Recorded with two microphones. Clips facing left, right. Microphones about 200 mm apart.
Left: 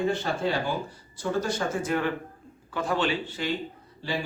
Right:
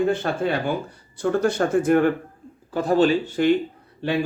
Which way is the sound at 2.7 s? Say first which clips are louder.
Right 9 dB; 40° right (ahead or behind).